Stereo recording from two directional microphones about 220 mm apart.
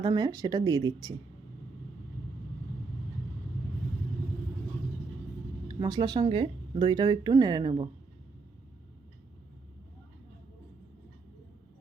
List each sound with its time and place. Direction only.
0.0 s speech: 15° right (ahead or behind)
5.8 s speech: 20° right (ahead or behind)